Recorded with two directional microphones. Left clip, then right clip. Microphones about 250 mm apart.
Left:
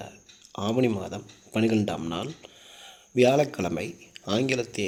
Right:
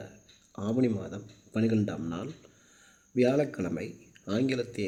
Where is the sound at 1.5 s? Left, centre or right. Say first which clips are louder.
Left 5 dB; centre.